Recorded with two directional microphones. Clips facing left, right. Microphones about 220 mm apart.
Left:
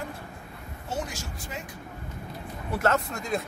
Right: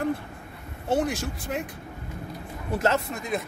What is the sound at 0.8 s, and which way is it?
Speech, 60° right (ahead or behind).